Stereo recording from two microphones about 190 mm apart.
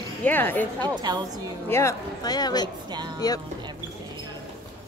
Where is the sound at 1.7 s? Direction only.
15° left (ahead or behind).